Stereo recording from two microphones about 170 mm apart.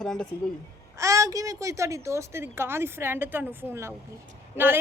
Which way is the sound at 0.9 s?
20° right (ahead or behind).